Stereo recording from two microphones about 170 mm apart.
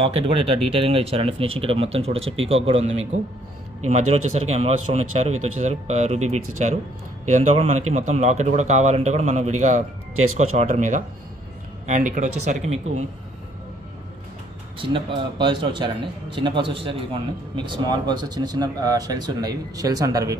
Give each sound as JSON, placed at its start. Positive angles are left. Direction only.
{"t": 0.0, "sound": "speech", "side_deg": -35}
{"t": 14.8, "sound": "a man's voice", "side_deg": -30}